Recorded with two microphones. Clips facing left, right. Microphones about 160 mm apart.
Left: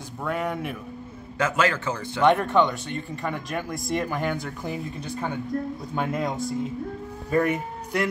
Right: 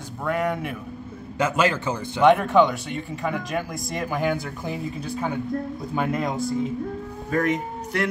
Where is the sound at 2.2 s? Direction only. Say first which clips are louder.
Right 3 dB; 5° right (ahead or behind).